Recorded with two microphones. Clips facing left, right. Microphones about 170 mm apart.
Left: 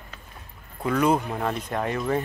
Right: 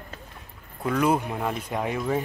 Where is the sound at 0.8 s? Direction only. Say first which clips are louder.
Left 1 dB; centre (ahead or behind).